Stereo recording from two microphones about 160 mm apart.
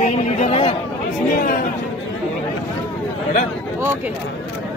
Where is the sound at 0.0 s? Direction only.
45° left (ahead or behind).